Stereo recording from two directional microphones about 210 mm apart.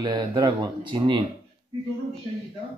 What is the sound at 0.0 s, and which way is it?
Speech, 20° right (ahead or behind).